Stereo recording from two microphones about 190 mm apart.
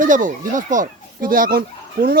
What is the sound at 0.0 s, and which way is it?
Speech, 45° right (ahead or behind).